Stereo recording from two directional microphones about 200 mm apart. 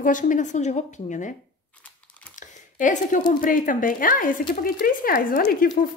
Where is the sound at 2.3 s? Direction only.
40° left (ahead or behind).